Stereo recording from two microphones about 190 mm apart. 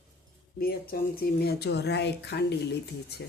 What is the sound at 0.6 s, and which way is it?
Speech, 50° left (ahead or behind).